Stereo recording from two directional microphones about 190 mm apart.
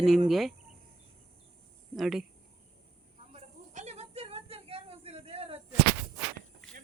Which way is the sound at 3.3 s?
35° right (ahead or behind).